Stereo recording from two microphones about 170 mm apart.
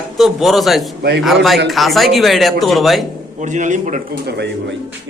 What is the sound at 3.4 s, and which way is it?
Speech, 45° right (ahead or behind).